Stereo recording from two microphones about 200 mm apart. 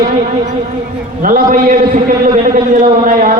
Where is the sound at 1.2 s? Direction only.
40° right (ahead or behind).